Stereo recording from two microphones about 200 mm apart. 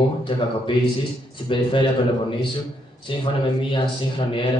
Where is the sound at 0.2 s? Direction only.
25° left (ahead or behind).